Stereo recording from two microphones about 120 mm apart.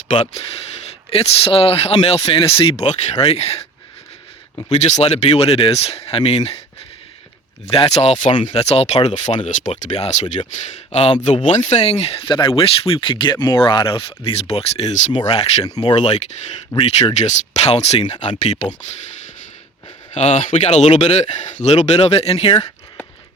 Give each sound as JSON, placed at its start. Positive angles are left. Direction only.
{"t": 1.1, "sound": "speech", "side_deg": 55}
{"t": 4.8, "sound": "speech", "side_deg": 70}
{"t": 7.7, "sound": "speech", "side_deg": 55}
{"t": 10.9, "sound": "speech", "side_deg": 55}
{"t": 15.6, "sound": "speech", "side_deg": 35}
{"t": 16.0, "sound": "speech", "side_deg": 70}
{"t": 16.7, "sound": "speech", "side_deg": 60}
{"t": 20.1, "sound": "speech", "side_deg": 80}